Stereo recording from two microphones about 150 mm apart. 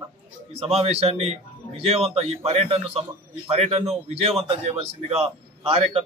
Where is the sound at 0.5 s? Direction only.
40° right (ahead or behind).